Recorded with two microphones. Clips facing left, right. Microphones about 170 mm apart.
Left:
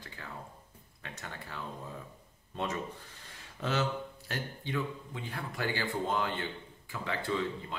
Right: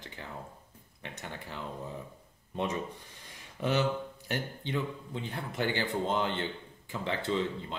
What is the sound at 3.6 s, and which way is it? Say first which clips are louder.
Speech: right 3 dB; 15° right (ahead or behind).